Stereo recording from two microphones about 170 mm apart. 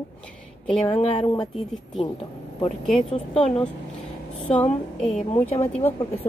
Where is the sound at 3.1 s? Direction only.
35° left (ahead or behind).